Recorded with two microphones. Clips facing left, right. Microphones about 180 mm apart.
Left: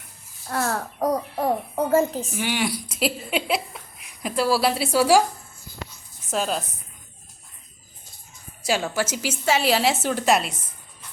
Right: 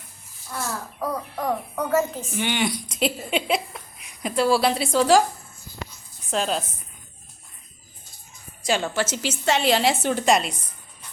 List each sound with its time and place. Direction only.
0.4 s speech: 60° left (ahead or behind)
0.9 s bird: 40° left (ahead or behind)
2.3 s speech: 5° left (ahead or behind)
6.3 s a woman's voice: centre (ahead or behind)
8.6 s a woman's voice: 5° left (ahead or behind)